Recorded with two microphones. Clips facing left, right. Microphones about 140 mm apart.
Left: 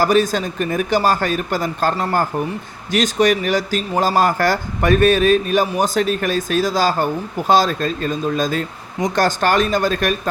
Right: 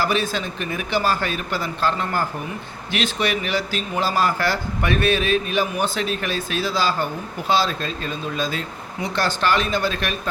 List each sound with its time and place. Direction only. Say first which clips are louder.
0.0 s speech: left 7 dB; 40° left (ahead or behind)